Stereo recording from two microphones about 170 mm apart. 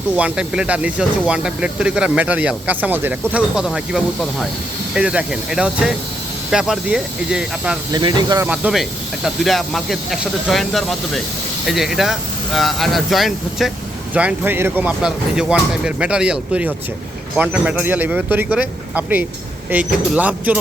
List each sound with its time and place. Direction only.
0.2 s speech: 5° right (ahead or behind)
7.9 s speech: 25° right (ahead or behind)
8.4 s speech: 5° right (ahead or behind)